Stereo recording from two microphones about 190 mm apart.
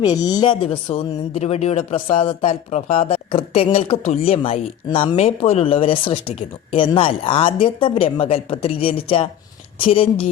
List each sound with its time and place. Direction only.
0.0 s speech: 20° left (ahead or behind)